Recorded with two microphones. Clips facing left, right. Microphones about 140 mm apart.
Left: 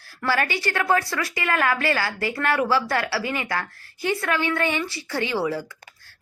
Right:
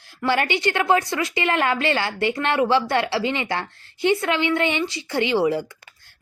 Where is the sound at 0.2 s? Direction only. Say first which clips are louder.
Right 3 dB; 20° right (ahead or behind).